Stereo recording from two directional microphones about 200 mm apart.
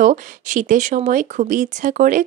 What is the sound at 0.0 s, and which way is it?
Speech, 40° right (ahead or behind).